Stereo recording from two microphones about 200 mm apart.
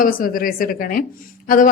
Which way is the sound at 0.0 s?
45° left (ahead or behind).